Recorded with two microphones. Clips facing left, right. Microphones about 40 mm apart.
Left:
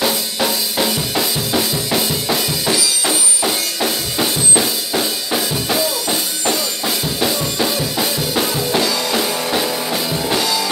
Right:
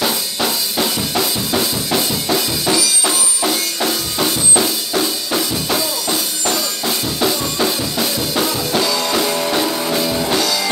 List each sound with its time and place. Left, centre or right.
0.0 s music: centre
4.9 s music: centre
8.4 s music: centre
9.0 s music: centre